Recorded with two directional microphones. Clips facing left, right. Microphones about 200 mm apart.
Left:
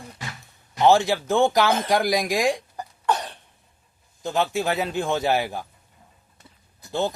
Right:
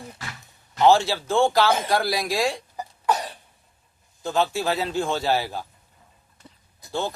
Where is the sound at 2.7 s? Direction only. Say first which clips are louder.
Even; 5° right (ahead or behind).